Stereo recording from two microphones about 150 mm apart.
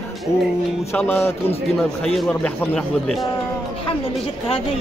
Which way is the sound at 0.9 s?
10° left (ahead or behind).